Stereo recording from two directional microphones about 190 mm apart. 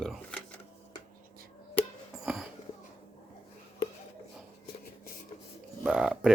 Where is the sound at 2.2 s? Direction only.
5° right (ahead or behind).